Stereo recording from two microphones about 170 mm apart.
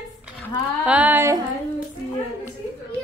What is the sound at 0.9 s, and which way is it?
Speech, 10° right (ahead or behind).